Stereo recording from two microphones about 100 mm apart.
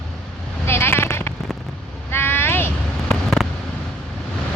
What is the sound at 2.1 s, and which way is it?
Vehicle, 25° left (ahead or behind).